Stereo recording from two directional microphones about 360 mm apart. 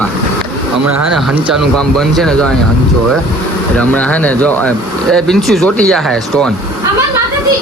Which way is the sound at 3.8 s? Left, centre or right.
Centre.